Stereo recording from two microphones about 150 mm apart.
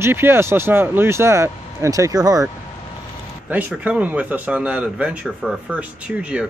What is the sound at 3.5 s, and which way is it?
A man's voice, 10° right (ahead or behind).